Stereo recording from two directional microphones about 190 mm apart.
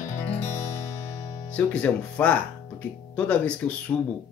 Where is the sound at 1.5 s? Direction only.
5° left (ahead or behind).